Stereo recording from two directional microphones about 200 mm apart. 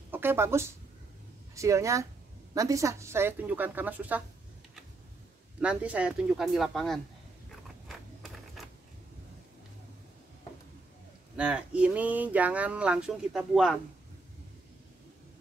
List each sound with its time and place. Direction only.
0.1 s a woman's voice: 10° right (ahead or behind)
5.6 s speech: 5° right (ahead or behind)
11.3 s speech: 5° right (ahead or behind)